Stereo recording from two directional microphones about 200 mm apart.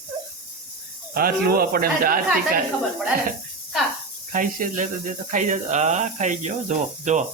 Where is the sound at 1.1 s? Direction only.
50° right (ahead or behind).